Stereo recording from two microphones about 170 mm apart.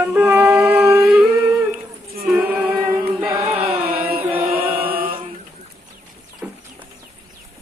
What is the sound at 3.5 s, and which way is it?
Chant, 35° right (ahead or behind).